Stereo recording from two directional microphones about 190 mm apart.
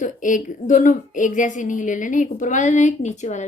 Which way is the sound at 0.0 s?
45° left (ahead or behind).